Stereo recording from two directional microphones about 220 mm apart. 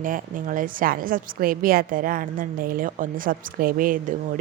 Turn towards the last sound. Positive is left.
turn(degrees=-40)  # may be behind; listen again after turning